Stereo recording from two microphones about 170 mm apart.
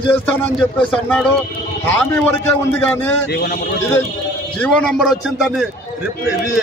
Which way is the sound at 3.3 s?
60° left (ahead or behind).